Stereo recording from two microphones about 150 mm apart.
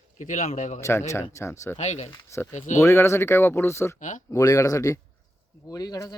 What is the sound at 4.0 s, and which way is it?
Speech, 60° left (ahead or behind).